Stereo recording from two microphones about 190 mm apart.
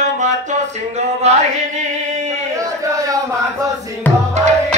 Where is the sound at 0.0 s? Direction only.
40° right (ahead or behind).